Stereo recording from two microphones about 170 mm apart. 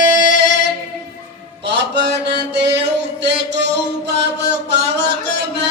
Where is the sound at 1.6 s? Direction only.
80° right.